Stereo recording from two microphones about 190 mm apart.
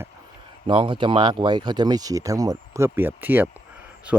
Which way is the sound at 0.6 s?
25° right (ahead or behind).